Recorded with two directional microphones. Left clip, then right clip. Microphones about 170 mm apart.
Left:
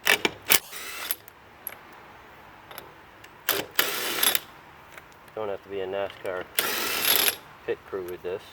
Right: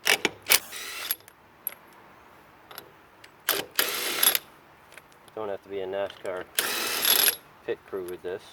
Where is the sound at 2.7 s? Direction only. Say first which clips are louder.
Left 1 dB; 10° right (ahead or behind).